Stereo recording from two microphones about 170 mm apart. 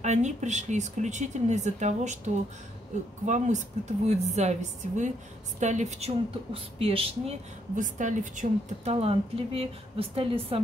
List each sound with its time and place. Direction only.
0.0 s a woman's voice: 45° right (ahead or behind)
7.7 s speech: 50° right (ahead or behind)
8.9 s a woman's voice: 35° right (ahead or behind)